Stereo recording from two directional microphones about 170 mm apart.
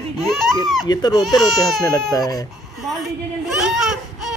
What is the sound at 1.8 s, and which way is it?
Speech, 20° left (ahead or behind).